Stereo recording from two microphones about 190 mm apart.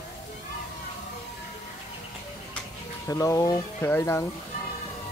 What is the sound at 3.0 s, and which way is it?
Speech, 15° left (ahead or behind).